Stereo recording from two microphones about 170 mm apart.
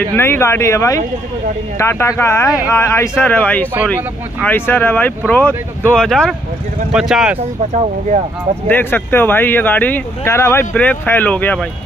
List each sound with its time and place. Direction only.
0.1 s speech: 15° left (ahead or behind); by 7.3 s 5° right (ahead or behind)
8.6 s speech: 10° left (ahead or behind)